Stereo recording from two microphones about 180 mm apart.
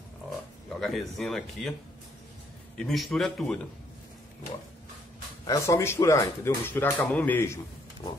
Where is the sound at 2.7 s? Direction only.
Centre (ahead or behind).